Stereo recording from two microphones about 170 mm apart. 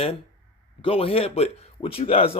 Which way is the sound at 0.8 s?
35° left (ahead or behind).